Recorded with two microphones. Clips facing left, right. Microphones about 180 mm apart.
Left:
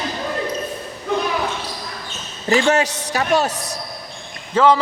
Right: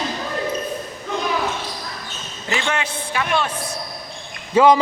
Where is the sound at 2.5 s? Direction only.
40° left (ahead or behind).